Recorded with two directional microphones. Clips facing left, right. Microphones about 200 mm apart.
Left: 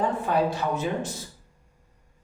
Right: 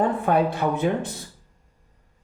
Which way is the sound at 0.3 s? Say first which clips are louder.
Right 3 dB; 55° right (ahead or behind).